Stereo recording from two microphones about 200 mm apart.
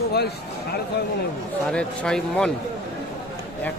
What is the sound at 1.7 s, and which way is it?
Speech, 5° left (ahead or behind).